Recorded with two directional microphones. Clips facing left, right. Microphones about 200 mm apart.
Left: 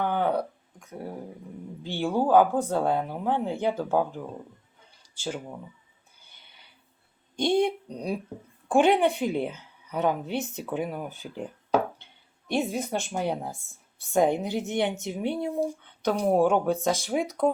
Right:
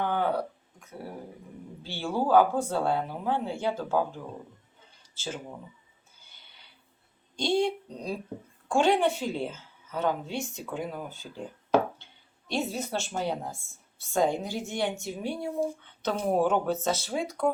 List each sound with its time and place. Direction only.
0.0 s a sound: 15° left (ahead or behind)
1.8 s a woman's voice: 15° left (ahead or behind)
7.3 s a woman's voice: 20° left (ahead or behind)
12.5 s a woman's voice: 15° left (ahead or behind)